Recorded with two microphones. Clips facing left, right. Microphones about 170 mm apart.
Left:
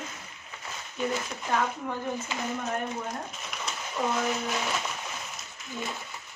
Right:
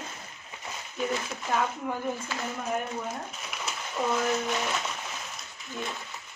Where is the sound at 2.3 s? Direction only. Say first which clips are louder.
Left 1 dB; 20° left (ahead or behind).